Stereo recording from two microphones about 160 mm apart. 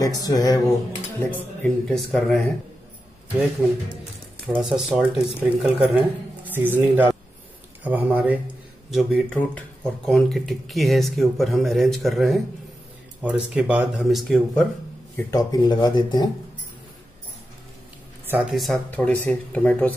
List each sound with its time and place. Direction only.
0.0 s speech: 20° left (ahead or behind)
1.2 s speech: 10° left (ahead or behind)
3.6 s speech: 15° right (ahead or behind)
4.5 s speech: centre (ahead or behind)
8.9 s speech: 5° left (ahead or behind)
15.1 s speech: 25° left (ahead or behind)
18.2 s a sound: 10° right (ahead or behind)
18.5 s speech: centre (ahead or behind)